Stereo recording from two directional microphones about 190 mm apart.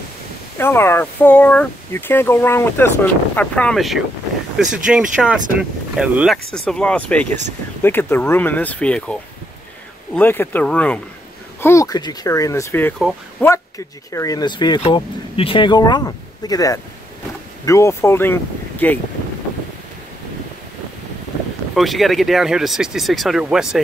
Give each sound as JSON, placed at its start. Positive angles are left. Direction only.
{"t": 0.6, "sound": "speech", "side_deg": 10}
{"t": 14.1, "sound": "speech", "side_deg": 20}
{"t": 21.7, "sound": "speech", "side_deg": 0}